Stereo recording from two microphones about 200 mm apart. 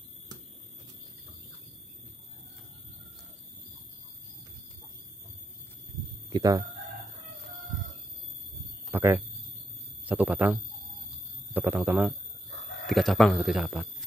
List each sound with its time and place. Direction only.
6.3 s speech: 20° right (ahead or behind)
8.9 s a sound: 10° right (ahead or behind)
10.0 s speech: 10° right (ahead or behind)